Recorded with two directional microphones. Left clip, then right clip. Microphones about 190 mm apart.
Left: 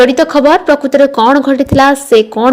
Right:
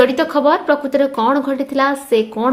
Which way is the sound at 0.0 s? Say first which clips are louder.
Left 6 dB; 30° left (ahead or behind).